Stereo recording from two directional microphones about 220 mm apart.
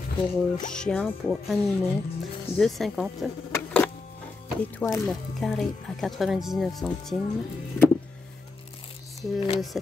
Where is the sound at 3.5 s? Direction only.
5° left (ahead or behind).